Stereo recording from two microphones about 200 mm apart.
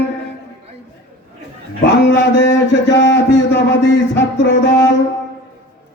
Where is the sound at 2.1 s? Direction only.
65° left (ahead or behind).